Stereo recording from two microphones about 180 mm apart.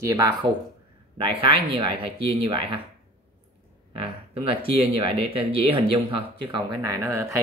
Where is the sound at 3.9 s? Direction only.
30° right (ahead or behind).